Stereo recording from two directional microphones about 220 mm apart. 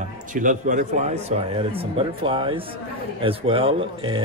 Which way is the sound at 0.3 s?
35° right (ahead or behind).